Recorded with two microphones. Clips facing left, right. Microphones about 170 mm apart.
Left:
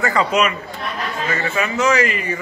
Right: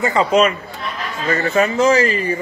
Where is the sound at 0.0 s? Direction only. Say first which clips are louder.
Right 3 dB; 25° right (ahead or behind).